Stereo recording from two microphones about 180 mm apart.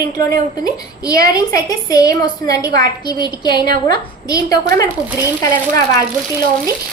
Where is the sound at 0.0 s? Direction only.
20° left (ahead or behind).